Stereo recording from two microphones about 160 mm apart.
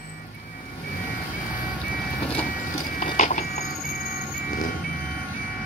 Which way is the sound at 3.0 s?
50° left (ahead or behind).